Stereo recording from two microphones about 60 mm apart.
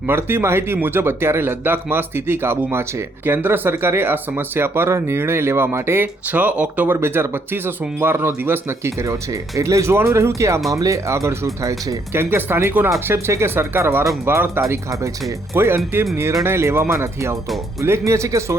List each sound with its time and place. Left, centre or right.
0.1 s speech: right
6.2 s speech: right
6.9 s speech: right
10.7 s speech: right
12.1 s speech: right
13.1 s speech: right
14.7 s speech: right
15.5 s speech: right